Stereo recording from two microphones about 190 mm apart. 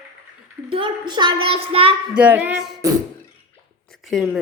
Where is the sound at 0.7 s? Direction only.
25° right (ahead or behind).